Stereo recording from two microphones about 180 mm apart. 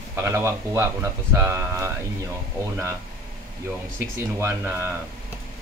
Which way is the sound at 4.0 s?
15° right (ahead or behind).